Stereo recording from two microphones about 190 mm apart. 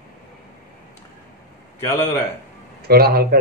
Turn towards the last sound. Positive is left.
turn(degrees=-55)  # may be behind; listen again after turning